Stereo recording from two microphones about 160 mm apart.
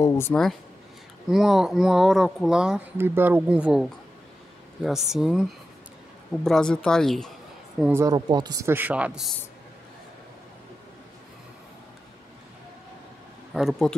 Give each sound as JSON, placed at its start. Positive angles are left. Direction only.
{"t": 0.0, "sound": "speech", "side_deg": 15}
{"t": 1.3, "sound": "speech", "side_deg": 0}
{"t": 7.8, "sound": "speech", "side_deg": -15}
{"t": 13.5, "sound": "speech", "side_deg": 0}